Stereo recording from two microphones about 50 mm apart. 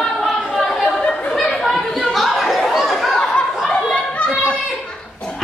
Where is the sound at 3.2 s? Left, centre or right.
Centre.